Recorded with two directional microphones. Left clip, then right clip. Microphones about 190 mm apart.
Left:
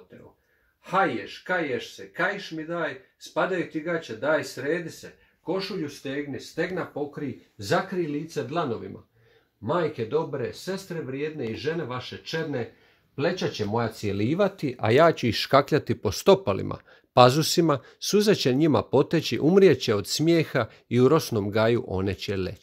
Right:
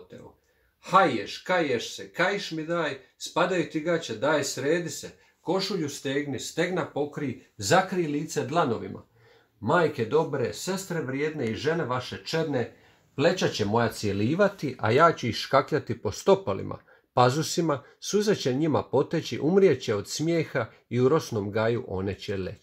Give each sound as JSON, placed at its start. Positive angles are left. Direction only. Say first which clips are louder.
{"t": 0.8, "sound": "speech", "louder": "right 3 dB", "side_deg": 0}
{"t": 7.5, "sound": "speech", "louder": "right 3 dB", "side_deg": 0}
{"t": 9.7, "sound": "speech", "louder": "right 2 dB", "side_deg": 0}
{"t": 13.6, "sound": "speech", "louder": "right 2 dB", "side_deg": 20}
{"t": 14.0, "sound": "speech", "louder": "even", "side_deg": 45}